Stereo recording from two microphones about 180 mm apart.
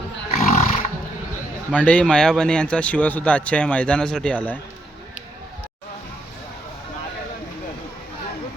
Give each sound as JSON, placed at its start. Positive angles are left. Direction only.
{"t": 0.3, "sound": "roar", "side_deg": 35}
{"t": 1.7, "sound": "speech", "side_deg": 10}